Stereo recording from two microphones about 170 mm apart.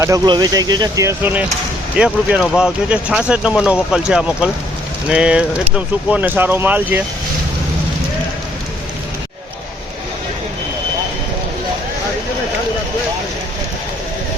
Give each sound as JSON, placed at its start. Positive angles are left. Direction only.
{"t": 0.0, "sound": "speech", "side_deg": -20}